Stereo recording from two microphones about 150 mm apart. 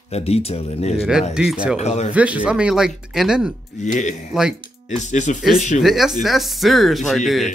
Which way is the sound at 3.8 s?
55° left (ahead or behind).